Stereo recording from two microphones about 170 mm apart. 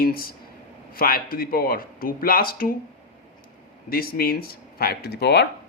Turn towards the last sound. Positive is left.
turn(degrees=75)  # may be behind; listen again after turning